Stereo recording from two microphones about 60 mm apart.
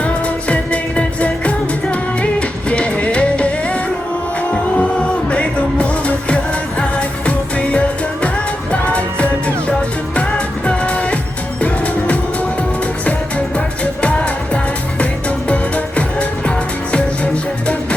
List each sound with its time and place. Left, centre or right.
0.0 s music: left
7.3 s music of asia: centre
8.7 s music: left
14.0 s music: centre